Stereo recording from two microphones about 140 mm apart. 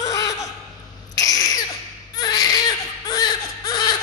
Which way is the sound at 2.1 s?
25° left (ahead or behind).